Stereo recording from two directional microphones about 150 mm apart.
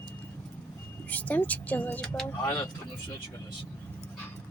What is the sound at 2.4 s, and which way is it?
Speech, 20° left (ahead or behind).